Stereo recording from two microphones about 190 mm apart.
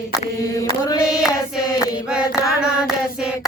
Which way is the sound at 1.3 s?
20° left (ahead or behind).